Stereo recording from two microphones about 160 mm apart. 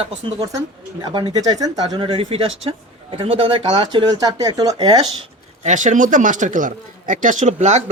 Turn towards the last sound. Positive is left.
turn(degrees=-45)  # may be behind; listen again after turning